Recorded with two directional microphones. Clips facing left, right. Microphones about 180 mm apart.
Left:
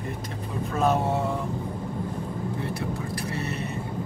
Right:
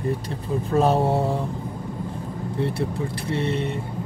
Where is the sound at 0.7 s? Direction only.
30° right (ahead or behind).